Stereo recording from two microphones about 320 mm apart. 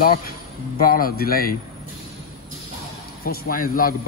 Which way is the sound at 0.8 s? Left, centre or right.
Left.